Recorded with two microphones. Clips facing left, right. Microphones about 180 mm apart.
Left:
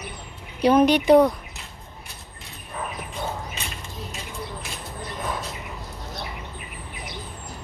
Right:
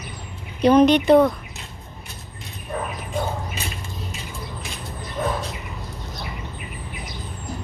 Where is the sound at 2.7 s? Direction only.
60° right (ahead or behind).